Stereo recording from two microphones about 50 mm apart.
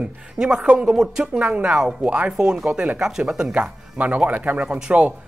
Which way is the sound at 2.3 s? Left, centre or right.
Centre.